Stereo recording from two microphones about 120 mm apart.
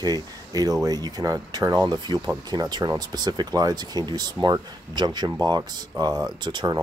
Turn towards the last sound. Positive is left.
turn(degrees=-35)  # may be behind; listen again after turning